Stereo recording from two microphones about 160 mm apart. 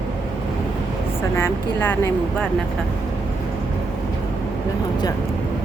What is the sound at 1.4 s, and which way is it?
Speech, 15° left (ahead or behind).